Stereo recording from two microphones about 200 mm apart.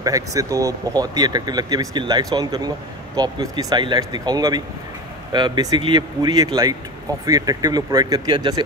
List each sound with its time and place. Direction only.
0.0 s speech: 15° right (ahead or behind)